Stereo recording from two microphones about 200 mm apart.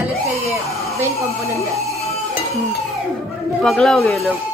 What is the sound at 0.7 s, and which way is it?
Hair dryer, centre (ahead or behind).